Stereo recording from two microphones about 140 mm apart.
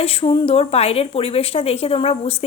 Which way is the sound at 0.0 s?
45° left (ahead or behind).